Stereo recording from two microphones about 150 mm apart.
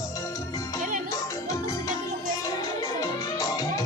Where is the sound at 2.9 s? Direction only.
25° left (ahead or behind).